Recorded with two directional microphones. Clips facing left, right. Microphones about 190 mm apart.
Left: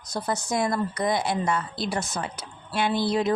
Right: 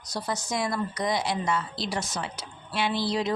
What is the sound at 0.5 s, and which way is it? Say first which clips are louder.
Speech: left 3 dB; 50° left (ahead or behind).